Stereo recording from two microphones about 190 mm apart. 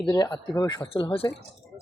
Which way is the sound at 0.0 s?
20° left (ahead or behind).